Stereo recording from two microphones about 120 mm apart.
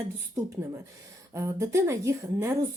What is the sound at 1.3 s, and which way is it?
Speech, 25° right (ahead or behind).